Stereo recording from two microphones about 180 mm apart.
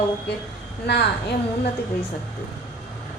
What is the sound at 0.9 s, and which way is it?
Female singing, 70° left (ahead or behind).